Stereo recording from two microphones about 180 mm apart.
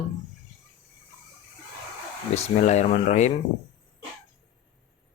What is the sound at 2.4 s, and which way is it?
Speech, 40° left (ahead or behind).